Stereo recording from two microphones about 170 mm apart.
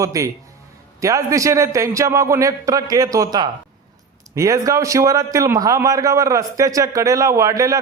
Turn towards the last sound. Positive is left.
turn(degrees=-20)  # may be behind; listen again after turning